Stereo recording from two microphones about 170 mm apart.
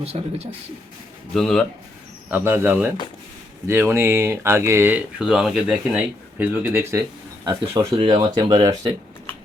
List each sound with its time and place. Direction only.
0.1 s speech: 35° right (ahead or behind)
1.3 s speech: 5° left (ahead or behind)
2.3 s speech: 10° right (ahead or behind)
7.9 s speech: 30° right (ahead or behind)